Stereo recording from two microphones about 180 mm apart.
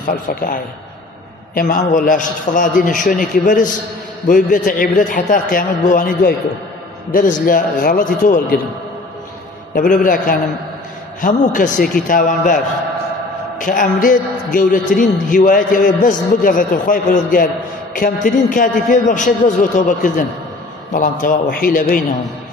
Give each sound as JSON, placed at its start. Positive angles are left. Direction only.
{"t": 0.0, "sound": "a man's voice", "side_deg": 50}
{"t": 9.8, "sound": "a man's voice", "side_deg": 50}
{"t": 13.6, "sound": "a man's voice", "side_deg": 50}